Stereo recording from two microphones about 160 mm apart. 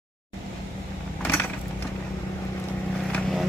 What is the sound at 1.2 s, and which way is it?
Vehicle, 10° left (ahead or behind).